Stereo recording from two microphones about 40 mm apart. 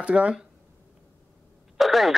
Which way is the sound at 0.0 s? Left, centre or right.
Right.